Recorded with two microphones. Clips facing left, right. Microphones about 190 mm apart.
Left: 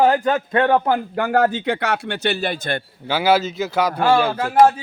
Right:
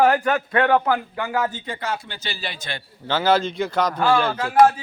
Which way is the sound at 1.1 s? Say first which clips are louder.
Left 7 dB; 55° left (ahead or behind).